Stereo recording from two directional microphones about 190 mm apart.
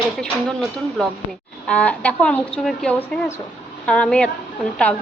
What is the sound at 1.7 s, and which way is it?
A woman's voice, 5° left (ahead or behind).